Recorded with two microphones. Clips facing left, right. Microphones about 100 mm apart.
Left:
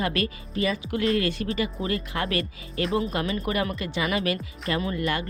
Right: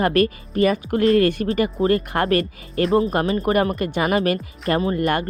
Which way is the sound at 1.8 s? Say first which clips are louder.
Right 9 dB; 35° right (ahead or behind).